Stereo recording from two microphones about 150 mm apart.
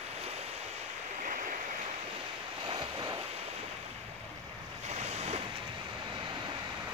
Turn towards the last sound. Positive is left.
turn(degrees=-45)  # may be behind; listen again after turning